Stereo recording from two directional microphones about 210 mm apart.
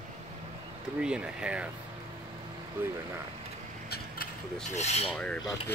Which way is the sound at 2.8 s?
10° right (ahead or behind).